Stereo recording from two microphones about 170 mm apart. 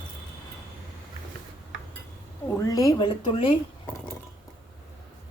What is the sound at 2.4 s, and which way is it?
Speech, 15° left (ahead or behind).